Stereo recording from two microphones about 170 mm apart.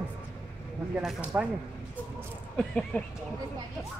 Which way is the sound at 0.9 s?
5° right (ahead or behind).